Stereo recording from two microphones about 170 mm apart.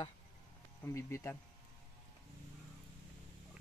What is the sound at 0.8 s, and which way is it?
Speech, 15° left (ahead or behind).